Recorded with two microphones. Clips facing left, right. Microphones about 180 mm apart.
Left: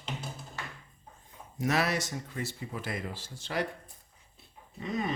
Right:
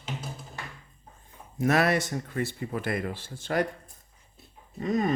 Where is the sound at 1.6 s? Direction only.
55° right (ahead or behind).